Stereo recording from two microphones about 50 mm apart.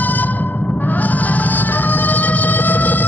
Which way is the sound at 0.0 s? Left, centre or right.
Left.